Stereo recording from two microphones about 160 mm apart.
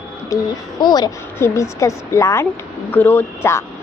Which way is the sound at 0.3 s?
20° left (ahead or behind).